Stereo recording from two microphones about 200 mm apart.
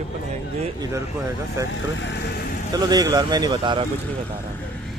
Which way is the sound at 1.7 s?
60° left (ahead or behind).